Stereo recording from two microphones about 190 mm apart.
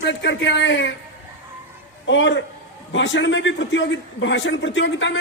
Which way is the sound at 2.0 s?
70° left (ahead or behind).